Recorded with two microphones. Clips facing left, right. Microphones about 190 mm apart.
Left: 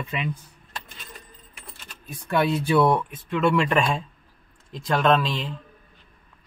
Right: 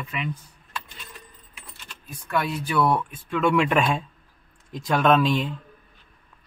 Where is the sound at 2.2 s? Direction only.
30° left (ahead or behind).